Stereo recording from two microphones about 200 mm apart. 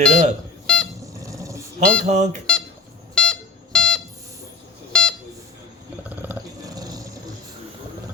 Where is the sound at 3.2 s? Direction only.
5° left (ahead or behind).